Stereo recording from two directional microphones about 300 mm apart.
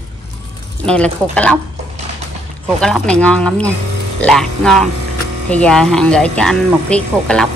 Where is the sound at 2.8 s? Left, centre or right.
Centre.